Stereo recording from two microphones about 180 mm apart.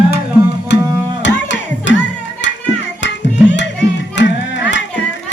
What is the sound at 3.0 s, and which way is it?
Music, 75° left (ahead or behind).